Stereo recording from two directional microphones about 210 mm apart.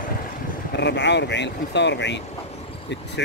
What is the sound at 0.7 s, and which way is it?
Speech, 55° left (ahead or behind).